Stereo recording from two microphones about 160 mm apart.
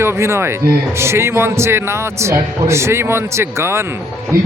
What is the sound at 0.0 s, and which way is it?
A man's voice, 15° right (ahead or behind).